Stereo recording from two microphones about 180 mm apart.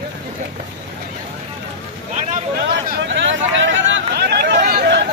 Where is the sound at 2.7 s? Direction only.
90° right; by 4.6 s 70° right (ahead or behind).